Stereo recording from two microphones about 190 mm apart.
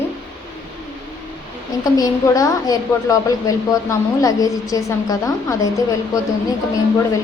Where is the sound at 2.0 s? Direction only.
15° left (ahead or behind).